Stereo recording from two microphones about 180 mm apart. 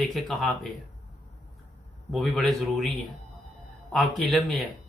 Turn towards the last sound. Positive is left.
turn(degrees=0)  # may be behind; listen again after turning